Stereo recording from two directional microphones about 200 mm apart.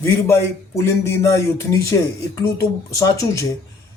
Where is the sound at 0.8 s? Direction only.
15° left (ahead or behind).